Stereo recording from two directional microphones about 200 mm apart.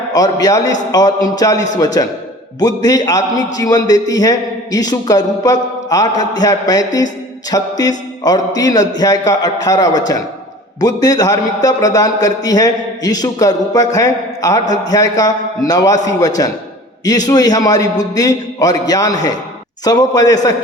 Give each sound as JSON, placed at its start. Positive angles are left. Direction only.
{"t": 0.1, "sound": "a man's voice", "side_deg": 20}